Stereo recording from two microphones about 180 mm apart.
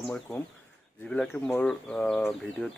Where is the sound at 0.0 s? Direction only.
5° left (ahead or behind).